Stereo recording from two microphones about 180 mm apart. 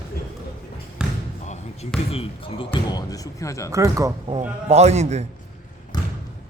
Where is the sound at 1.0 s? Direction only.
5° right (ahead or behind).